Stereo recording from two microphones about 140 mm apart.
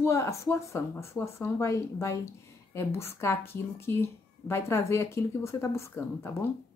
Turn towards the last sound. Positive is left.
turn(degrees=20)  # may be behind; listen again after turning